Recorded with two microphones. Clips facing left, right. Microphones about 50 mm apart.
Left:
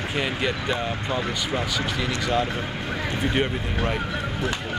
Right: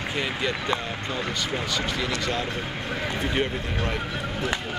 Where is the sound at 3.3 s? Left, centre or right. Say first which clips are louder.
Left 2 dB; centre.